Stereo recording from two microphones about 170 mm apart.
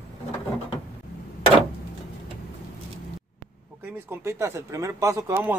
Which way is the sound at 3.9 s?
15° right (ahead or behind).